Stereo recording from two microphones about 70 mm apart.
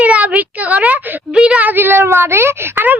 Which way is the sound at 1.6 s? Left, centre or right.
Right.